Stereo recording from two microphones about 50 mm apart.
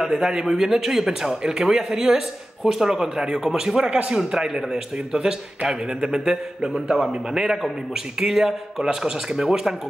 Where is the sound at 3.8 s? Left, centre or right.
Right.